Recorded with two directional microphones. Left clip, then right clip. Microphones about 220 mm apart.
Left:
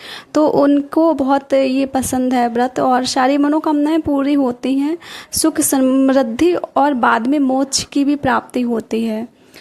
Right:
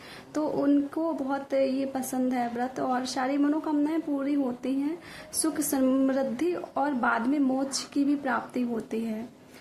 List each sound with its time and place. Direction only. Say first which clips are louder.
0.4 s speech: left 12 dB; 40° left (ahead or behind)